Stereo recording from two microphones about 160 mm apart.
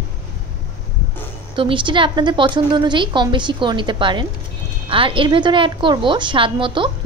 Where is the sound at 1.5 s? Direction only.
30° right (ahead or behind).